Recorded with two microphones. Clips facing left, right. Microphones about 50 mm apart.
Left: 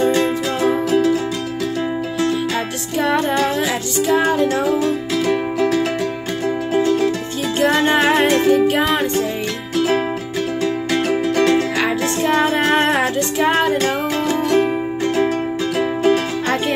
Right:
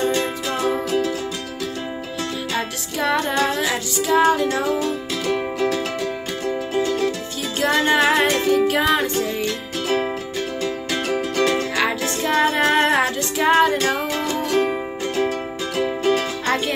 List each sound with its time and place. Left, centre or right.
0.8 s music: left
3.0 s music: left
4.8 s music: left
7.7 s music: left
11.1 s music: left
12.3 s music: centre
15.8 s music: left